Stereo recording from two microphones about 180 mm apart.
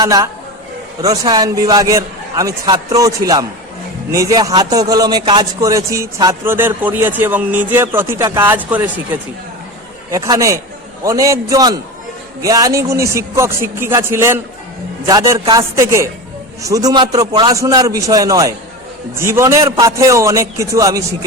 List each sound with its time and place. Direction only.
0.0 s a man's voice: 20° right (ahead or behind)
10.1 s a man's voice: 20° right (ahead or behind)